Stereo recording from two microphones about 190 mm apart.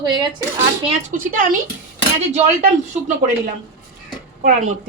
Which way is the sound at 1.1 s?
45° right (ahead or behind).